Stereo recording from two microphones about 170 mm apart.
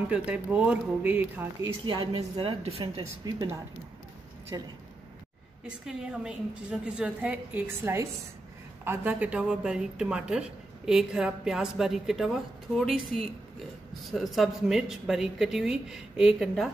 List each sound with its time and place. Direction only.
0.1 s speech: 10° right (ahead or behind)
1.9 s a woman's voice: 30° right (ahead or behind)
4.5 s speech: 20° right (ahead or behind)
5.7 s a woman's voice: 5° right (ahead or behind)